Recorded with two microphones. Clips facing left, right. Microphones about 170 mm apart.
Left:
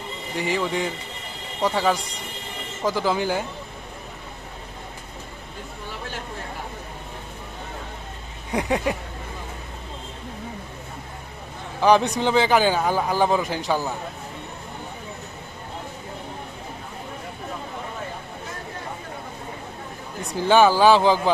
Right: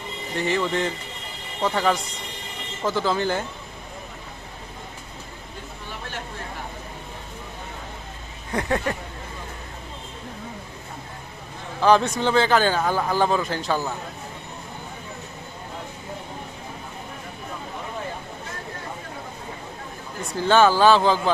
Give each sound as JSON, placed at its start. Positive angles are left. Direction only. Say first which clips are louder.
{"t": 0.3, "sound": "a man's voice", "louder": "right 1 dB", "side_deg": 10}
{"t": 8.5, "sound": "a man's voice", "louder": "left 1 dB", "side_deg": 15}
{"t": 11.8, "sound": "a man's voice", "louder": "even", "side_deg": 15}
{"t": 20.2, "sound": "a man's voice", "louder": "left 1 dB", "side_deg": 15}